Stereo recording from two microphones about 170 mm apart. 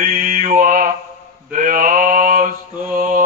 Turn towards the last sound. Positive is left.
turn(degrees=-55)  # may be behind; listen again after turning